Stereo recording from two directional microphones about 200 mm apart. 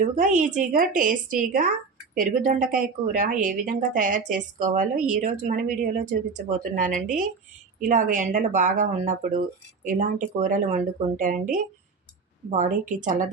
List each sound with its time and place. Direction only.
0.0 s speech: 40° right (ahead or behind)